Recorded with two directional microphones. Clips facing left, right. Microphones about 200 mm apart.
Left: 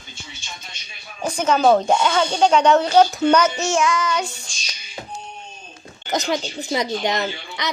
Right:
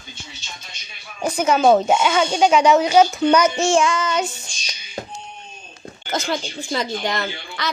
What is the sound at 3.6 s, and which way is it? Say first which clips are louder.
Child singing: right 2 dB; 30° right (ahead or behind).